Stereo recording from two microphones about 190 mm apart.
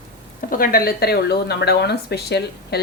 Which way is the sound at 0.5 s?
50° left (ahead or behind).